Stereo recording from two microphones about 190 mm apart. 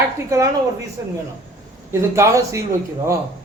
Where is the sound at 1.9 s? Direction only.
15° right (ahead or behind).